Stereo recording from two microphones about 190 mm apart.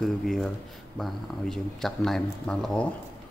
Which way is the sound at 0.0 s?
Centre (ahead or behind).